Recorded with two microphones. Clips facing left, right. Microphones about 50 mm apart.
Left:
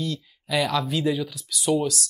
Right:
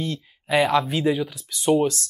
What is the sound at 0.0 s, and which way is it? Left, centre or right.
Speech, right.